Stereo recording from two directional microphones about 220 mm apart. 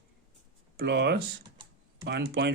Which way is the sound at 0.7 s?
50° right (ahead or behind).